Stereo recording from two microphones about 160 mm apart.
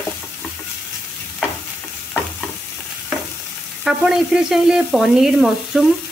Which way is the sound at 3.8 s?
Centre (ahead or behind).